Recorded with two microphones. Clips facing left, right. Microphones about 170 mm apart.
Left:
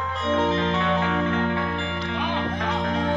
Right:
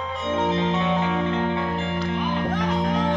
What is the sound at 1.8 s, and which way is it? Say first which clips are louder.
Music: right 3 dB; 40° right (ahead or behind).